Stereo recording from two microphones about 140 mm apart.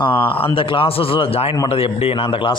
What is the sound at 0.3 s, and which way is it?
Speech, 15° left (ahead or behind).